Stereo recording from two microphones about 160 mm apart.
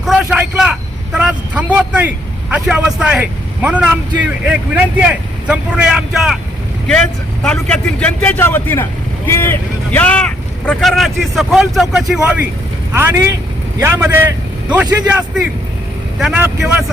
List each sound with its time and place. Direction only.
0.0 s vehicle: 5° right (ahead or behind)
2.5 s speech: 5° right (ahead or behind)